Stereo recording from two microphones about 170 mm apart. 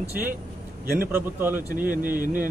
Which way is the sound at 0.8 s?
60° right (ahead or behind).